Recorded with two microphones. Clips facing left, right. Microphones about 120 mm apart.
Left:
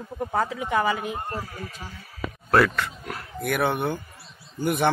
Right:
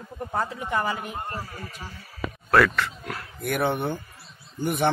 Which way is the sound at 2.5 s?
25° left (ahead or behind).